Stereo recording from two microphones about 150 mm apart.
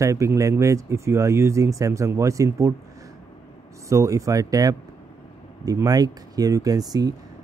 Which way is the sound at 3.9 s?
20° right (ahead or behind).